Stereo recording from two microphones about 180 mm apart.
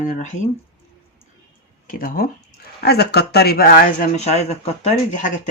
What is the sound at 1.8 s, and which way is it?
Speech, 50° left (ahead or behind).